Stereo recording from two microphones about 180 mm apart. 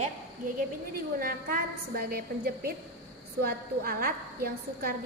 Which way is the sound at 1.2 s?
50° right (ahead or behind).